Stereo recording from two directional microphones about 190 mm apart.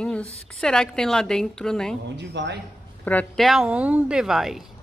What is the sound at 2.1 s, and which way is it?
Speech, 65° right (ahead or behind).